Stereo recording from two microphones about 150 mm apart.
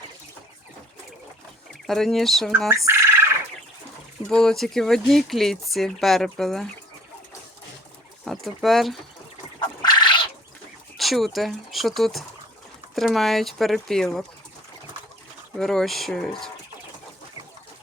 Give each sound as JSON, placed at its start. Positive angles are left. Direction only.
{"t": 1.9, "sound": "speech", "side_deg": 5}
{"t": 2.6, "sound": "speech", "side_deg": -20}
{"t": 4.3, "sound": "speech", "side_deg": 5}
{"t": 8.2, "sound": "speech", "side_deg": 0}
{"t": 9.6, "sound": "bird", "side_deg": 30}
{"t": 10.9, "sound": "speech", "side_deg": 0}
{"t": 15.5, "sound": "speech", "side_deg": 5}